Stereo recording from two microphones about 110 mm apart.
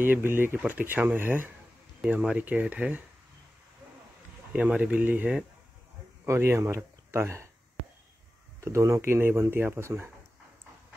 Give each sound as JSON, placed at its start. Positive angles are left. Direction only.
{"t": 0.0, "sound": "speech", "side_deg": -20}
{"t": 4.5, "sound": "speech", "side_deg": -10}
{"t": 8.5, "sound": "speech", "side_deg": -25}